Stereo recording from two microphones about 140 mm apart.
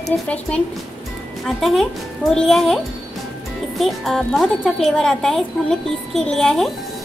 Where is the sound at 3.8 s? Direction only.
Centre (ahead or behind).